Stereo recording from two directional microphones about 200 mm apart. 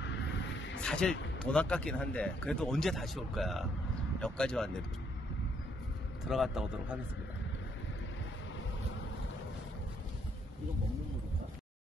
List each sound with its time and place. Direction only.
0.0 s vehicle: 60° left (ahead or behind)
0.7 s speech: 5° left (ahead or behind)
6.2 s speech: centre (ahead or behind)